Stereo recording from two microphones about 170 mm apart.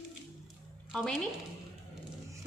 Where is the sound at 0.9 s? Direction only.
5° left (ahead or behind).